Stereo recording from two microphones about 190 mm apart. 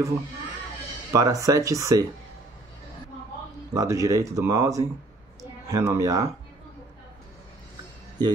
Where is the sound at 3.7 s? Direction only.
15° right (ahead or behind).